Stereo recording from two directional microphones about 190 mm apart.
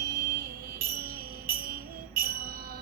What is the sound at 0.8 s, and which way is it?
Music, 50° right (ahead or behind).